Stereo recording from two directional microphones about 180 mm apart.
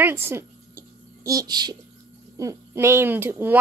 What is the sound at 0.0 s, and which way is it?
A woman's voice, 15° right (ahead or behind).